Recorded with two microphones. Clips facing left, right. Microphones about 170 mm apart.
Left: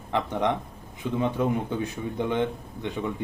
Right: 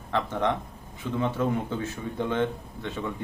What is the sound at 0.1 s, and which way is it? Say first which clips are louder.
Speech: left 1 dB; 15° left (ahead or behind).